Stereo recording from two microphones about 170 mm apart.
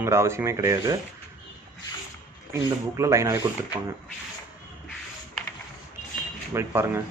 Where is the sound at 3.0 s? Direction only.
15° right (ahead or behind).